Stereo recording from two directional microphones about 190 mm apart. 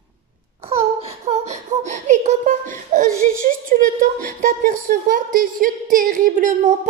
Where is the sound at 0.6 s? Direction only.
35° right (ahead or behind).